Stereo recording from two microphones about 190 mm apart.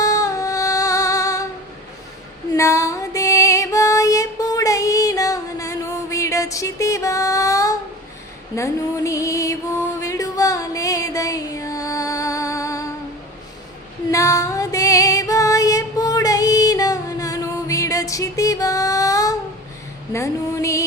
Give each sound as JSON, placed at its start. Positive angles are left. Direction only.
{"t": 0.0, "sound": "music", "side_deg": 15}
{"t": 2.6, "sound": "music", "side_deg": 15}
{"t": 14.1, "sound": "female singing", "side_deg": 15}